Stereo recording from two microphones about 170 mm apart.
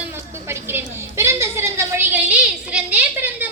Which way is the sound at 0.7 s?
15° right (ahead or behind).